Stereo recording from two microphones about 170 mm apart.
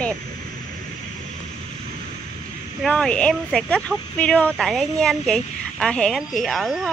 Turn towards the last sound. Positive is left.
turn(degrees=0)  # may be behind; listen again after turning